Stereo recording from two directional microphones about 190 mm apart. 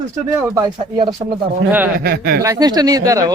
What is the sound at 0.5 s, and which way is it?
Speech, 20° right (ahead or behind).